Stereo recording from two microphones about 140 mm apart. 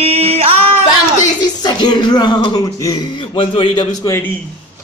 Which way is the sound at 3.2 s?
40° left (ahead or behind).